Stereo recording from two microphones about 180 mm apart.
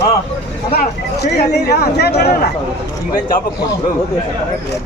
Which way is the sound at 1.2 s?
65° left (ahead or behind).